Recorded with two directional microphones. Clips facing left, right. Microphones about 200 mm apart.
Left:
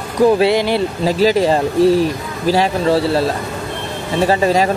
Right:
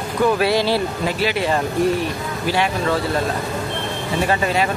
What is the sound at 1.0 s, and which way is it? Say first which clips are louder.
Speech: left 11 dB; 40° left (ahead or behind).